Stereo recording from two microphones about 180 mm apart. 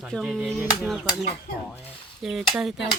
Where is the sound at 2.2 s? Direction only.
Centre (ahead or behind).